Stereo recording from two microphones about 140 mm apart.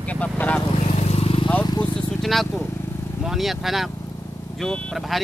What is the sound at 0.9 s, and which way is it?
Vehicle, 50° left (ahead or behind).